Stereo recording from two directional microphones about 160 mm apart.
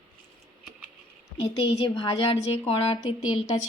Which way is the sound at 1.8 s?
30° left (ahead or behind).